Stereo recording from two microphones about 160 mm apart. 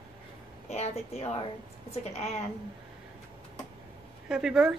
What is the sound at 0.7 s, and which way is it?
A woman's voice, 40° left (ahead or behind).